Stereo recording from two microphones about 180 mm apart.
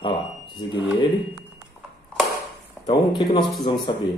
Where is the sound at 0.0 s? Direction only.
25° left (ahead or behind).